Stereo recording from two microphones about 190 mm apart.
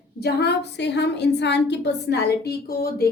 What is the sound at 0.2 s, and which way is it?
A woman's voice, 60° left (ahead or behind).